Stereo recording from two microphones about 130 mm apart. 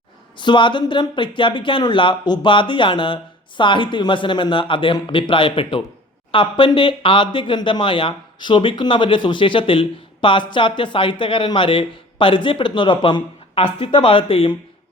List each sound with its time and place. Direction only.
0.3 s speech: 35° left (ahead or behind)